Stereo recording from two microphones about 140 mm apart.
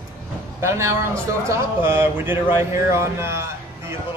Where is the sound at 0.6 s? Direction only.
20° right (ahead or behind).